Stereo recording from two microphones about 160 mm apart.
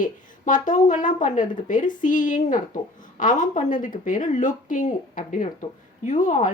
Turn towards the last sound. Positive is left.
turn(degrees=55)  # may be behind; listen again after turning